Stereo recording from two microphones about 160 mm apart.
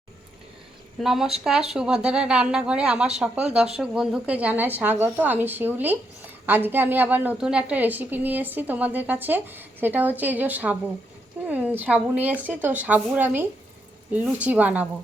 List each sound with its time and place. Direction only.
0.9 s a woman's voice: centre (ahead or behind)